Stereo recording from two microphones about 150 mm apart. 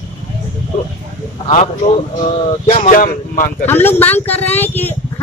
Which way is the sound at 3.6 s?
15° left (ahead or behind).